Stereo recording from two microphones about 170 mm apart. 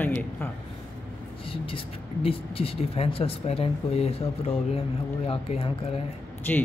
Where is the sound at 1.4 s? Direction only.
30° left (ahead or behind).